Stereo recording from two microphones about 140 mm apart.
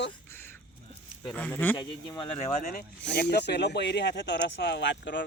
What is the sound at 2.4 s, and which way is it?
Speech, 65° left (ahead or behind).